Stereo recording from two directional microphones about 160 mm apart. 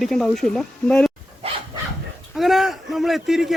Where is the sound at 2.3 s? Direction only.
Centre (ahead or behind).